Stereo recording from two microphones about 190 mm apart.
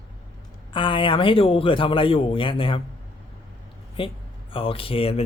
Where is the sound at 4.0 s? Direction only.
30° left (ahead or behind).